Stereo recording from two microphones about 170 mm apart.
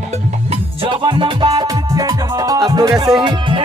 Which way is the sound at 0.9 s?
30° right (ahead or behind).